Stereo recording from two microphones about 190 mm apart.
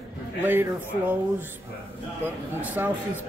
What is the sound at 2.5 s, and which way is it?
Speech, 10° right (ahead or behind).